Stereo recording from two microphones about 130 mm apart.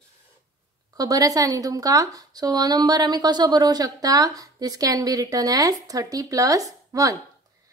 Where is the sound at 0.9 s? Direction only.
30° right (ahead or behind).